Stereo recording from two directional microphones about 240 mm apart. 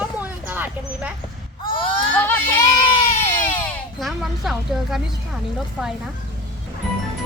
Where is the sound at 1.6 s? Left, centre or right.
Left.